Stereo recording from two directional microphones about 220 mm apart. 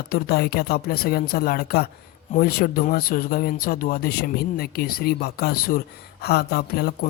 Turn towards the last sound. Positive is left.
turn(degrees=45)  # may be behind; listen again after turning